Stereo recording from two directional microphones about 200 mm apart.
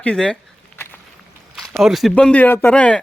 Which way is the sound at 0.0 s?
5° left (ahead or behind).